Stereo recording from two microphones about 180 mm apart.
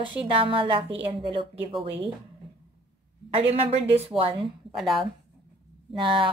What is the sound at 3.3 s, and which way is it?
A woman's voice, 35° right (ahead or behind).